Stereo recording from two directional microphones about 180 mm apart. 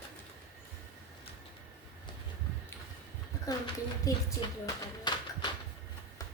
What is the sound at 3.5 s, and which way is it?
Speech, 20° left (ahead or behind).